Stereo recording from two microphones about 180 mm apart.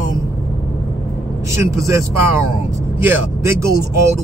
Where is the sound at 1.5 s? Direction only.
15° right (ahead or behind).